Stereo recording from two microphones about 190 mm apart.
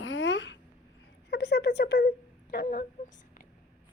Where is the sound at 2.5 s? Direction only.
50° left (ahead or behind).